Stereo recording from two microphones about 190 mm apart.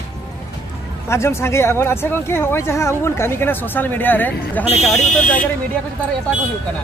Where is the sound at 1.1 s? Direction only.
15° left (ahead or behind).